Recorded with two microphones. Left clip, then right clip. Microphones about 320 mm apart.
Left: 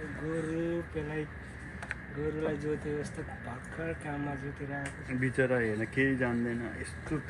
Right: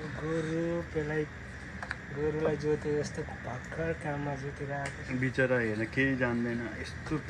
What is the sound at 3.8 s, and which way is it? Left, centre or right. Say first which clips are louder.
Speech: right 4 dB; right.